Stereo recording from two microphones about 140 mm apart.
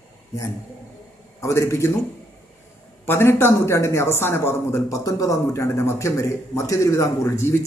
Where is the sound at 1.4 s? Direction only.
20° left (ahead or behind).